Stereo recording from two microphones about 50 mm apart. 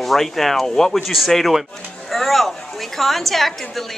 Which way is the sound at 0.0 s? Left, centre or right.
Centre.